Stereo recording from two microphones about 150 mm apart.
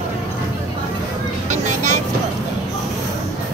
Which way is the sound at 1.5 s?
55° right (ahead or behind).